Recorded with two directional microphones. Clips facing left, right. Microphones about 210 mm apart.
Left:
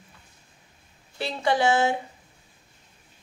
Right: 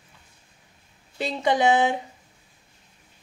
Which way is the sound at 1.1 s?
20° right (ahead or behind).